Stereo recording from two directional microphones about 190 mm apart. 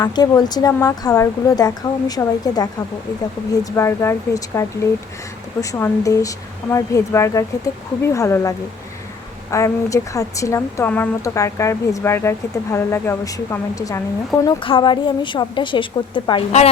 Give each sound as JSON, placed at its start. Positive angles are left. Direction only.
{"t": 0.0, "sound": "a woman's voice", "side_deg": 20}